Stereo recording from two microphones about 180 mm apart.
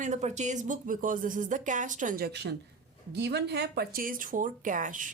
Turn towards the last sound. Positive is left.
turn(degrees=-45)  # may be behind; listen again after turning